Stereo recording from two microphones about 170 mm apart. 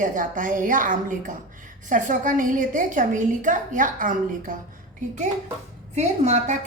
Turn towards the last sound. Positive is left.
turn(degrees=-40)  # may be behind; listen again after turning